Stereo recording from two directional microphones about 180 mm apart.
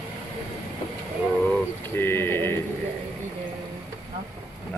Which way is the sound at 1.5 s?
10° left (ahead or behind).